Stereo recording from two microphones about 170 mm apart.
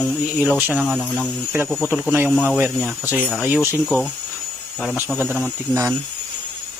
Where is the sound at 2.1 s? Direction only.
10° right (ahead or behind).